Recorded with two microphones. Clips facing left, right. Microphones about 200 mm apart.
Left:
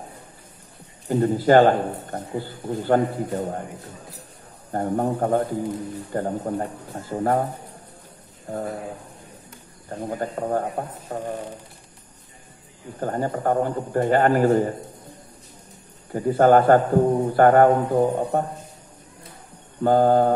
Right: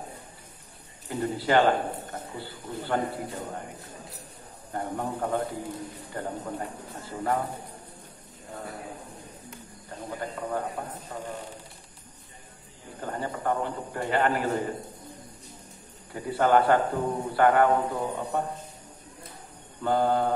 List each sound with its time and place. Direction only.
1.0 s a man's voice: 45° left (ahead or behind)
4.7 s a man's voice: 45° left (ahead or behind)
8.5 s a man's voice: 45° left (ahead or behind)
9.8 s a man's voice: 45° left (ahead or behind)
13.0 s a man's voice: 45° left (ahead or behind)
16.1 s a man's voice: 45° left (ahead or behind)
19.8 s a man's voice: 45° left (ahead or behind)